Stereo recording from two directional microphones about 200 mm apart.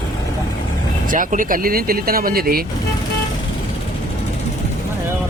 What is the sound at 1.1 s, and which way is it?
Speech, 40° right (ahead or behind).